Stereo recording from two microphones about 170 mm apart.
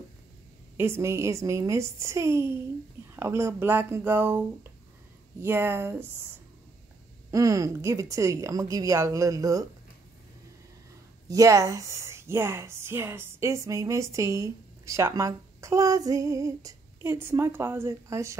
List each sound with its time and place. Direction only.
0.7 s speech: 15° right (ahead or behind)
5.4 s speech: 15° right (ahead or behind)
7.2 s speech: 20° right (ahead or behind)
11.2 s speech: 20° right (ahead or behind)